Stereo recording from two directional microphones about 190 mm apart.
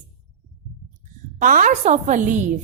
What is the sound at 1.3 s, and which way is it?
A woman's voice, 45° right (ahead or behind).